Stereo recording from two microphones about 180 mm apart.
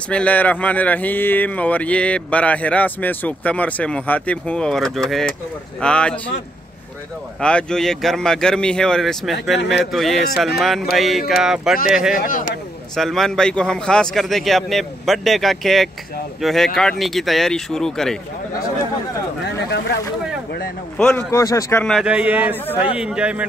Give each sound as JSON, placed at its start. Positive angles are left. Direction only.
{"t": 0.1, "sound": "a man's voice", "side_deg": 10}
{"t": 7.3, "sound": "a man's voice", "side_deg": 5}
{"t": 12.2, "sound": "a man's voice", "side_deg": 50}
{"t": 12.9, "sound": "a man's voice", "side_deg": 0}
{"t": 19.4, "sound": "a sound", "side_deg": 70}
{"t": 21.0, "sound": "speech", "side_deg": 5}
{"t": 21.4, "sound": "speech", "side_deg": 15}
{"t": 21.8, "sound": "a man's voice", "side_deg": 0}